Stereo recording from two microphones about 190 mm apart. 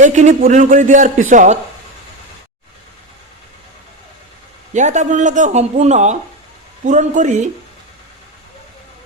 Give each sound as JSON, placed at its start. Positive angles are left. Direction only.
{"t": 0.0, "sound": "a man's voice", "side_deg": -40}
{"t": 4.7, "sound": "speech", "side_deg": -40}